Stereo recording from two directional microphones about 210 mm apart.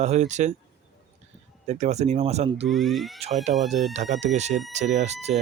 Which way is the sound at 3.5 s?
30° right (ahead or behind).